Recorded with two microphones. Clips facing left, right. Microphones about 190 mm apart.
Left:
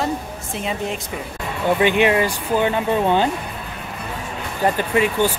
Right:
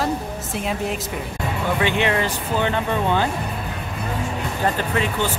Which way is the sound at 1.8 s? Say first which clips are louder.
Left 5 dB; 15° left (ahead or behind).